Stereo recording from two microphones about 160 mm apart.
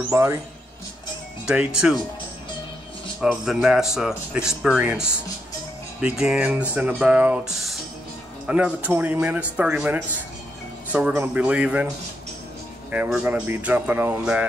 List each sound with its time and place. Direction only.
0.1 s speech: 15° right (ahead or behind)
1.4 s speech: 5° right (ahead or behind)
3.2 s speech: 5° right (ahead or behind)
12.9 s speech: 10° right (ahead or behind)